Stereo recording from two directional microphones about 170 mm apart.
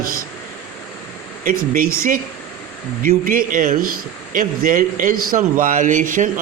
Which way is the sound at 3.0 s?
55° right (ahead or behind).